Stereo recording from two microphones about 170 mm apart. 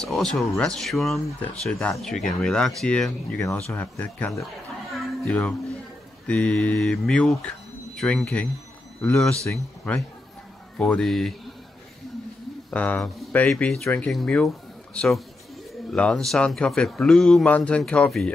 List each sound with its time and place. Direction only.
0.0 s speech: 5° left (ahead or behind)
4.9 s a sound: 5° left (ahead or behind)
6.2 s speech: 5° left (ahead or behind)
9.5 s speech: 15° left (ahead or behind)
10.8 s speech: 5° left (ahead or behind)
12.7 s speech: 10° left (ahead or behind)